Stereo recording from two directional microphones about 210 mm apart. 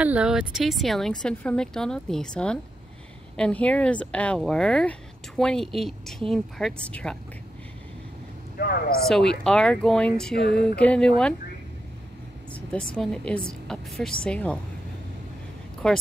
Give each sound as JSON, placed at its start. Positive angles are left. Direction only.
{"t": 0.0, "sound": "a woman's voice", "side_deg": -5}
{"t": 8.5, "sound": "speech", "side_deg": 45}
{"t": 9.0, "sound": "a woman's voice", "side_deg": 5}
{"t": 12.5, "sound": "a woman's voice", "side_deg": 5}
{"t": 15.8, "sound": "a woman's voice", "side_deg": 5}